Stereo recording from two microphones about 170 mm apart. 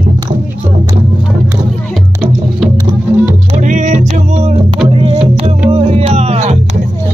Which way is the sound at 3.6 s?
45° right (ahead or behind).